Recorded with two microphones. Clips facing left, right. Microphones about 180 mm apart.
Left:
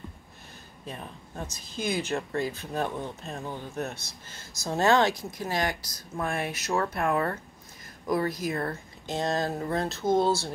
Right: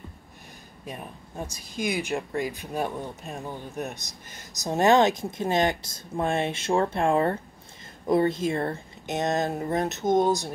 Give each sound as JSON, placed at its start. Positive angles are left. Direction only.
{"t": 0.8, "sound": "speech", "side_deg": -10}